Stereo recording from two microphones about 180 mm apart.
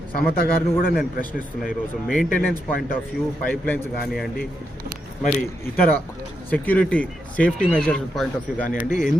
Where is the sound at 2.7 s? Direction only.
55° left (ahead or behind).